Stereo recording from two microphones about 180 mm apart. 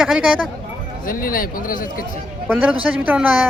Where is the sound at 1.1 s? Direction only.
50° left (ahead or behind).